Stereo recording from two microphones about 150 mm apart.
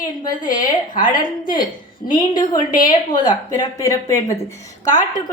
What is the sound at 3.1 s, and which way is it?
A woman's voice, 30° left (ahead or behind).